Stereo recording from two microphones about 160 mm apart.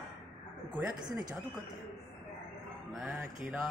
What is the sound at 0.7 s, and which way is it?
Speech, 25° right (ahead or behind).